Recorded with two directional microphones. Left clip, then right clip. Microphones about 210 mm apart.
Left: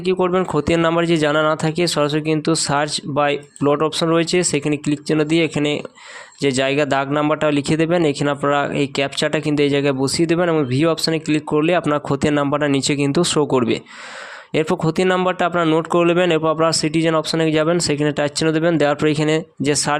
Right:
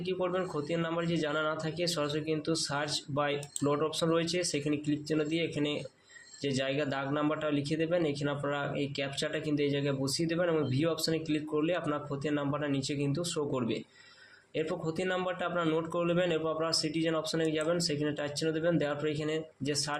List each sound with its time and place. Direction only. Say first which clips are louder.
0.0 s a man's voice: left 14 dB; 45° left (ahead or behind)